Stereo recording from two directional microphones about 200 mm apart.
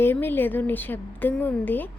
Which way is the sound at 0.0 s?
10° left (ahead or behind).